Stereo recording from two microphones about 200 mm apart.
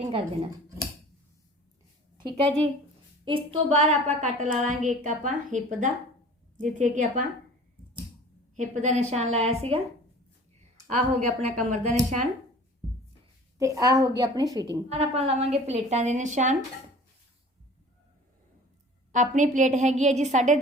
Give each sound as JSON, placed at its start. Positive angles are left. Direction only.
{"t": 2.1, "sound": "a woman's voice", "side_deg": -25}
{"t": 8.5, "sound": "a woman's voice", "side_deg": -35}
{"t": 10.8, "sound": "a woman's voice", "side_deg": -40}
{"t": 13.6, "sound": "a woman's voice", "side_deg": -15}
{"t": 14.8, "sound": "a woman's voice", "side_deg": -30}
{"t": 19.1, "sound": "a woman's voice", "side_deg": -40}